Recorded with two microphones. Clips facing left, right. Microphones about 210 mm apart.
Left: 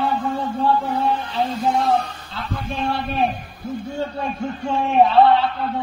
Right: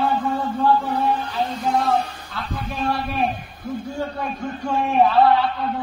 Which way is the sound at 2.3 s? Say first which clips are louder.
Left 1 dB; 25° left (ahead or behind).